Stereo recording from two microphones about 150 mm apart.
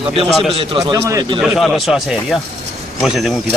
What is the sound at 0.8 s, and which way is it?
Speech, 20° right (ahead or behind).